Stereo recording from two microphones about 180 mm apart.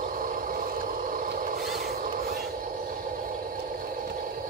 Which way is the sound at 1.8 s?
55° right (ahead or behind).